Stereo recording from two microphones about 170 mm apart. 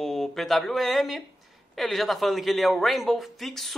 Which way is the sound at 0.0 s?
Centre (ahead or behind).